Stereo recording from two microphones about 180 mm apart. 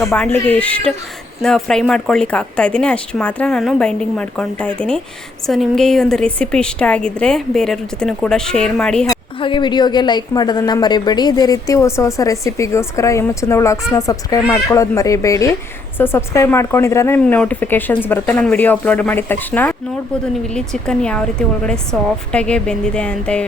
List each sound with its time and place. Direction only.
0.1 s speech: 10° left (ahead or behind)
9.4 s a woman's voice: 25° left (ahead or behind); by 23.4 s 5° left (ahead or behind)